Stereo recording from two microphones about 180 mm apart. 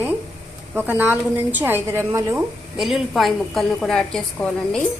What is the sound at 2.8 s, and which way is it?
A woman's voice, centre (ahead or behind).